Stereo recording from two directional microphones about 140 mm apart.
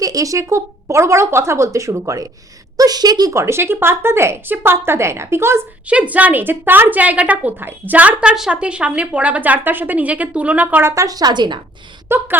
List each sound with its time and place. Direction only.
0.0 s speech: 25° right (ahead or behind)
12.0 s speech: 15° right (ahead or behind)